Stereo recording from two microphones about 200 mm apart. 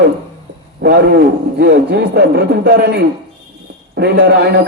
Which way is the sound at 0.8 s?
55° right (ahead or behind).